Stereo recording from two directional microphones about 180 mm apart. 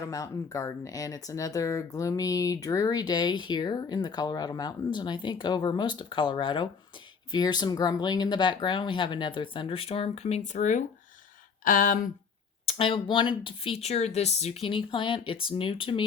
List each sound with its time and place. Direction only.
0.0 s speech: 20° left (ahead or behind); by 12.1 s 50° left (ahead or behind)
12.6 s speech: 30° left (ahead or behind)